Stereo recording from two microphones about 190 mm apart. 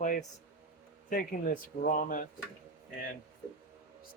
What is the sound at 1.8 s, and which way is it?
Speech, 45° left (ahead or behind).